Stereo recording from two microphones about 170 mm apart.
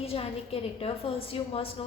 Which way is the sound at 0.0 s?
35° left (ahead or behind).